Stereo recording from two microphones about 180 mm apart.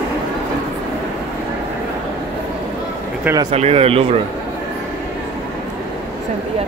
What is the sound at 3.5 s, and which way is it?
Speech, 35° right (ahead or behind).